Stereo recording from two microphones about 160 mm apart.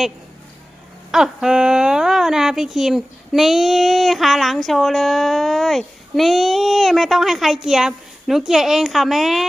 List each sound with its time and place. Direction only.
1.1 s speech: 5° right (ahead or behind)